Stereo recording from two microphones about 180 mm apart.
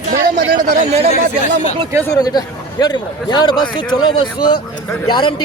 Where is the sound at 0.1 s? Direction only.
55° right (ahead or behind).